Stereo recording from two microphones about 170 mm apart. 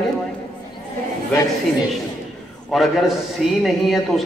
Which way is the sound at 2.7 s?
Centre (ahead or behind).